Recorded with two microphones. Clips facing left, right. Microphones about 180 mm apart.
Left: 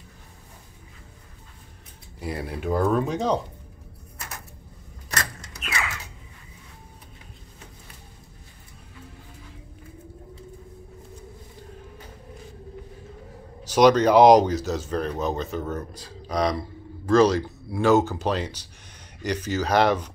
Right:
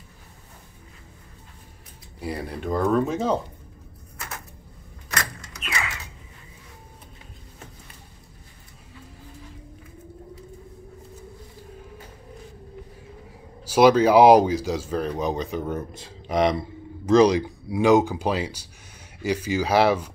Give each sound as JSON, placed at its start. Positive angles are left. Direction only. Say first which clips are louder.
{"t": 2.1, "sound": "speech", "louder": "even", "side_deg": 0}
{"t": 13.7, "sound": "speech", "louder": "right 1 dB", "side_deg": -5}